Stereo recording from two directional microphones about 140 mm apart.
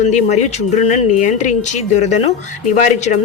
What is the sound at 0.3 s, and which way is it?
Speech, 55° left (ahead or behind).